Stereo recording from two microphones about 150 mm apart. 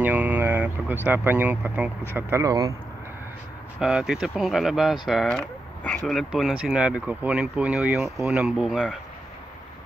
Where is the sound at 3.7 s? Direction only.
5° right (ahead or behind).